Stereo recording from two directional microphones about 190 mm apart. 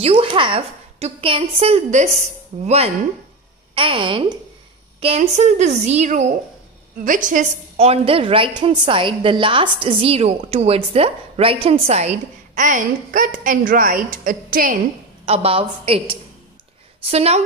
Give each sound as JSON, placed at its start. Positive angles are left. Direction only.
{"t": 0.0, "sound": "a woman's voice", "side_deg": -25}
{"t": 7.2, "sound": "a woman's voice", "side_deg": -40}
{"t": 15.2, "sound": "a woman's voice", "side_deg": -30}